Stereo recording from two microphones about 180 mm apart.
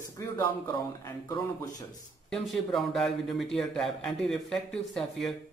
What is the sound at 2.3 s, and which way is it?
A man's voice, centre (ahead or behind).